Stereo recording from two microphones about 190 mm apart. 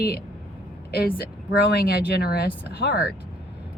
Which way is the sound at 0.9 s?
55° left (ahead or behind).